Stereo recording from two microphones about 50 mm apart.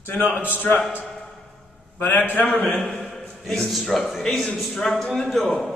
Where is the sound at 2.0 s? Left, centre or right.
Left.